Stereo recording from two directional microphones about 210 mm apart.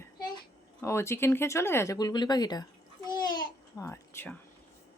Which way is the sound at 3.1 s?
20° left (ahead or behind).